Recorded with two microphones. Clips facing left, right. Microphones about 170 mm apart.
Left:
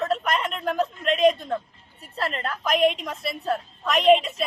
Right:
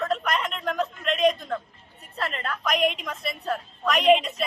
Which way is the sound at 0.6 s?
30° left (ahead or behind).